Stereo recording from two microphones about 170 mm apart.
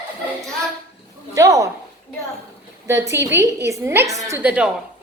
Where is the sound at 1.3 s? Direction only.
20° right (ahead or behind).